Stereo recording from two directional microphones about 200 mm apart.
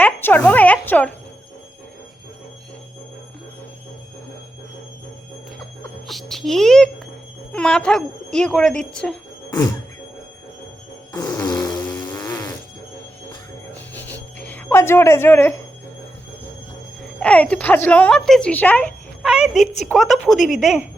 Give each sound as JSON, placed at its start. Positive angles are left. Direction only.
{"t": 0.0, "sound": "a sound", "side_deg": 10}
{"t": 6.1, "sound": "a child's voice", "side_deg": 0}
{"t": 11.1, "sound": "fart", "side_deg": 20}
{"t": 11.6, "sound": "vehicle", "side_deg": 20}
{"t": 13.9, "sound": "a sound", "side_deg": 10}
{"t": 17.2, "sound": "a woman's voice", "side_deg": 5}